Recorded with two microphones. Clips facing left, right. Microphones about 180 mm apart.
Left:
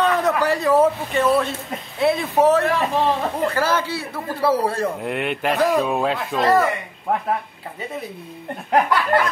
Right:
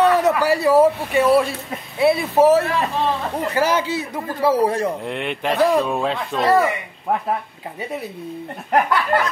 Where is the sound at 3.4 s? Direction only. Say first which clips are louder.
Right 3 dB; 15° right (ahead or behind).